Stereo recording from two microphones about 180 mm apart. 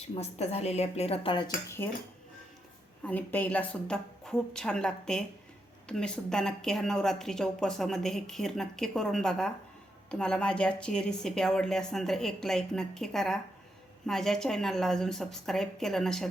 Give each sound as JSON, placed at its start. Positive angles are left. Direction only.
{"t": 0.2, "sound": "a woman's voice", "side_deg": 35}
{"t": 3.0, "sound": "speech", "side_deg": 10}